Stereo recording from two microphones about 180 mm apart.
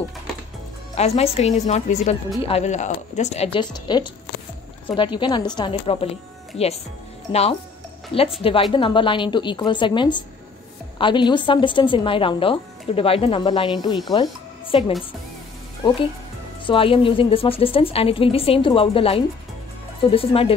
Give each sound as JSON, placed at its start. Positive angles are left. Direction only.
{"t": 0.9, "sound": "a woman's voice", "side_deg": 35}
{"t": 8.4, "sound": "a woman's voice", "side_deg": 30}
{"t": 16.6, "sound": "a woman's voice", "side_deg": 30}